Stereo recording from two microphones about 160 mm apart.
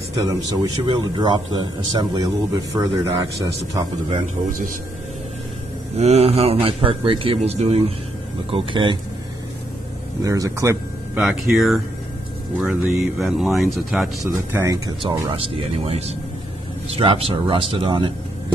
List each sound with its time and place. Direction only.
0.2 s speech: 20° right (ahead or behind)
5.9 s a man's voice: 45° right (ahead or behind)
10.2 s speech: 20° right (ahead or behind)
11.1 s speech: centre (ahead or behind)
14.5 s speech: 15° right (ahead or behind)
15.0 s a man's voice: 30° right (ahead or behind)